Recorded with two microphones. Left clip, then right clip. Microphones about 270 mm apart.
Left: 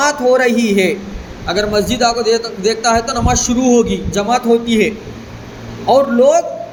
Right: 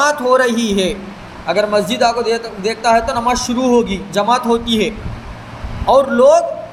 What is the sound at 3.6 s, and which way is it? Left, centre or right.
Speech, right.